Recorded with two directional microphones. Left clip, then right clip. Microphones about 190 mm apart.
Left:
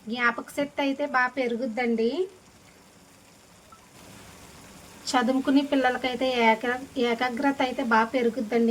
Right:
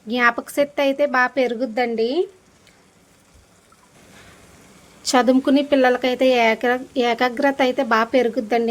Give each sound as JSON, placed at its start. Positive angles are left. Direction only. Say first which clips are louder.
{"t": 0.1, "sound": "speech", "louder": "right 8 dB", "side_deg": -55}
{"t": 5.0, "sound": "speech", "louder": "right 8 dB", "side_deg": -55}